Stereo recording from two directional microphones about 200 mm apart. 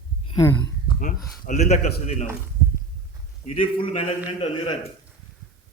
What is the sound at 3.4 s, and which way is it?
Speech, 30° left (ahead or behind).